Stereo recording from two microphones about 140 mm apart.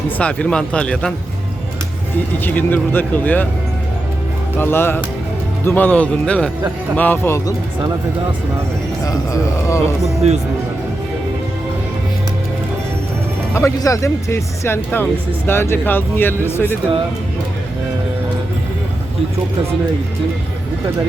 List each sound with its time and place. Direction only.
0.2 s speech: 10° left (ahead or behind)
2.4 s speech: 15° left (ahead or behind)
4.5 s speech: 15° left (ahead or behind)
9.0 s speech: 25° left (ahead or behind)
13.5 s speech: 20° left (ahead or behind)